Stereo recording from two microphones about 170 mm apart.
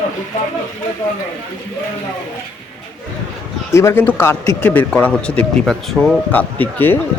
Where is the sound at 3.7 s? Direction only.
15° left (ahead or behind).